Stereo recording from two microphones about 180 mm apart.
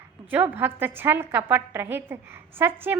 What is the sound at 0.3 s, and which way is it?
A woman's voice, 10° right (ahead or behind).